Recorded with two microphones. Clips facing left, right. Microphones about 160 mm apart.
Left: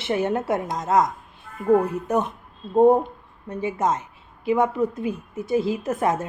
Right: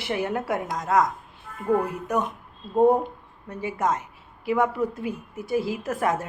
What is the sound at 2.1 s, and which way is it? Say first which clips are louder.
Speech: left 2 dB; 25° left (ahead or behind).